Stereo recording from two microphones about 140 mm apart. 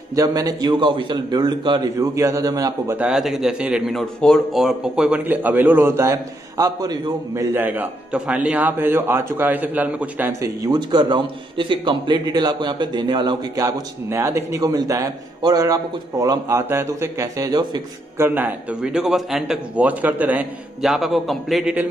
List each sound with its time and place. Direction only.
0.1 s a man's voice: 25° right (ahead or behind)
3.0 s a man's voice: 5° right (ahead or behind); by 7.4 s 25° right (ahead or behind)
7.5 s a man's voice: 10° right (ahead or behind)
10.6 s a man's voice: 30° right (ahead or behind)
18.1 s a man's voice: 15° right (ahead or behind); by 21.7 s centre (ahead or behind)